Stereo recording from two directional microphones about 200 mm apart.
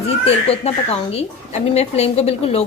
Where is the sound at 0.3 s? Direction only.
30° left (ahead or behind).